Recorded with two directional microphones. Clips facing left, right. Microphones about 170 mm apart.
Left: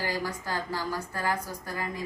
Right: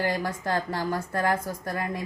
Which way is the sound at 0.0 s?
55° right (ahead or behind).